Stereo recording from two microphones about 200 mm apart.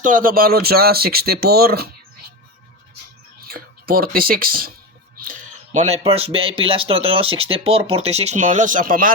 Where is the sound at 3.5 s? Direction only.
50° right (ahead or behind).